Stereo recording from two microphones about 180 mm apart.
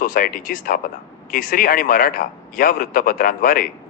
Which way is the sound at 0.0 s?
50° left (ahead or behind).